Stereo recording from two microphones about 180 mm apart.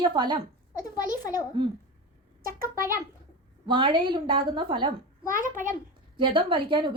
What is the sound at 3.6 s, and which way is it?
A woman's voice, 25° right (ahead or behind).